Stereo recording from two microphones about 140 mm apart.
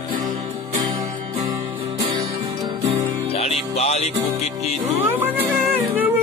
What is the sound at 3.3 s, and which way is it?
Music, 45° left (ahead or behind).